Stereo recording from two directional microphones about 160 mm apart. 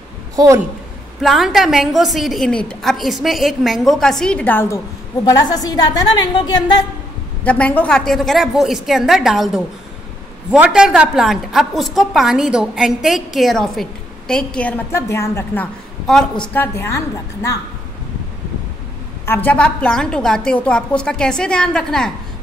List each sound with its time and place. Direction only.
1.2 s a woman's voice: centre (ahead or behind)
5.2 s a woman's voice: 20° left (ahead or behind)
7.4 s a woman's voice: 10° left (ahead or behind)
19.2 s a woman's voice: 10° left (ahead or behind)